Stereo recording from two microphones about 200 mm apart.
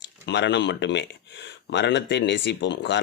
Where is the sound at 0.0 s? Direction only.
60° left (ahead or behind).